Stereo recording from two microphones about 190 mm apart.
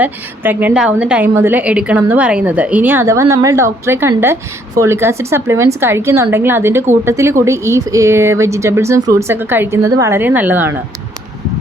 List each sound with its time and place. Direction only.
0.0 s a woman's voice: 10° right (ahead or behind)